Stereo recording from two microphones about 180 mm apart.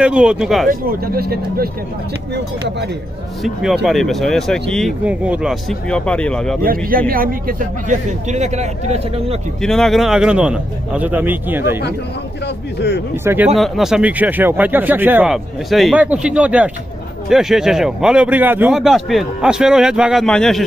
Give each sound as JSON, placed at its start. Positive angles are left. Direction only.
{"t": 0.0, "sound": "a man's voice", "side_deg": -5}
{"t": 0.7, "sound": "speech", "side_deg": -55}
{"t": 3.4, "sound": "a man's voice", "side_deg": 0}
{"t": 6.6, "sound": "a man's voice", "side_deg": -55}
{"t": 9.6, "sound": "a man's voice", "side_deg": 0}
{"t": 13.1, "sound": "speech", "side_deg": -15}
{"t": 13.6, "sound": "a man's voice", "side_deg": 0}